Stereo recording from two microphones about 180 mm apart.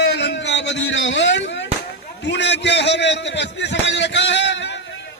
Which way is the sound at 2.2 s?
75° left (ahead or behind).